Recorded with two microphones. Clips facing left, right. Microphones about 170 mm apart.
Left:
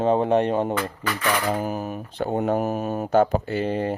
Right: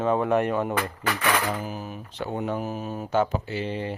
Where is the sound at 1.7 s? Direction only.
45° left (ahead or behind).